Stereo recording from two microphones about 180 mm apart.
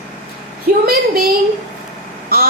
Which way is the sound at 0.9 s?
55° right (ahead or behind).